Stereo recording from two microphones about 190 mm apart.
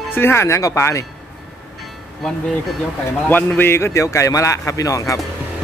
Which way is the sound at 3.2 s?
10° left (ahead or behind).